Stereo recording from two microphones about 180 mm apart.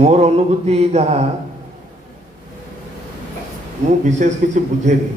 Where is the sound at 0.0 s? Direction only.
35° right (ahead or behind).